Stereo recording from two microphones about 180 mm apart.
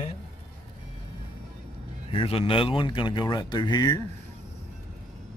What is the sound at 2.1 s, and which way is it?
Speech, 30° left (ahead or behind).